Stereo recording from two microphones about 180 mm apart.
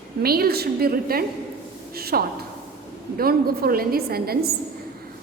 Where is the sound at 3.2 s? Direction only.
55° right (ahead or behind).